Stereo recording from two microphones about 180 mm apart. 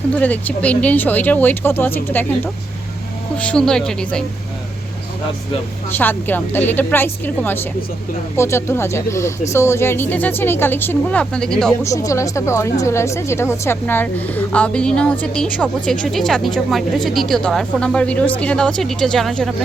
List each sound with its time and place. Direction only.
0.1 s a woman's voice: 10° left (ahead or behind)
5.9 s a woman's voice: 10° left (ahead or behind)
11.8 s a woman's voice: 15° left (ahead or behind)